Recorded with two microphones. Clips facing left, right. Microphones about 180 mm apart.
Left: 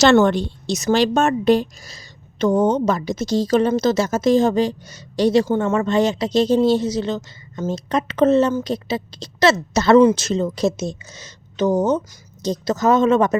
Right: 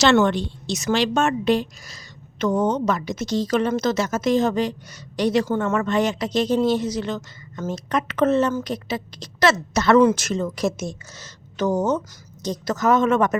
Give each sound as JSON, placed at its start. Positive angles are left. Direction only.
{"t": 0.0, "sound": "a woman's voice", "side_deg": 40}